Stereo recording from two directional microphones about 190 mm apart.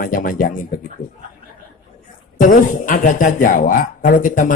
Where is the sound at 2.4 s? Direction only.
45° left (ahead or behind).